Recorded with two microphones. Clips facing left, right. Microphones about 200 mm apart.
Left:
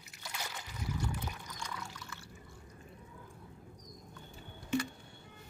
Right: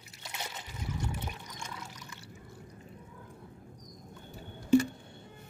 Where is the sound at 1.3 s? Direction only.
25° right (ahead or behind).